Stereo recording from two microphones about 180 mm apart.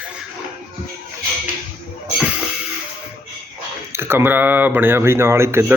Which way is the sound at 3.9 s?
15° right (ahead or behind).